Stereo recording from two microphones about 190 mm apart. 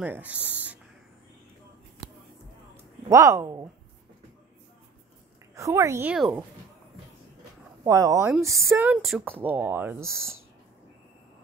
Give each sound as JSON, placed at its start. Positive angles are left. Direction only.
{"t": 0.0, "sound": "speech", "side_deg": -10}
{"t": 3.1, "sound": "speech", "side_deg": -15}
{"t": 5.5, "sound": "speech", "side_deg": -15}
{"t": 7.8, "sound": "speech", "side_deg": -15}
{"t": 8.6, "sound": "speech", "side_deg": -5}